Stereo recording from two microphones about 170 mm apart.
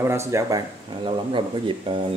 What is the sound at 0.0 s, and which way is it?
A man's voice, 15° right (ahead or behind).